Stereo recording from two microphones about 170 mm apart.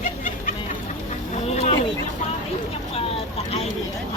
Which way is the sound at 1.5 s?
40° left (ahead or behind).